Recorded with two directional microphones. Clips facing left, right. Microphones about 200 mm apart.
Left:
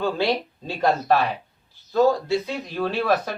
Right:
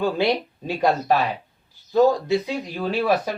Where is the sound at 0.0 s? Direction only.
15° right (ahead or behind).